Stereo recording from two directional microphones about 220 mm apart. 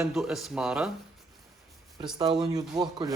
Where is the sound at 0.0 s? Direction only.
5° right (ahead or behind).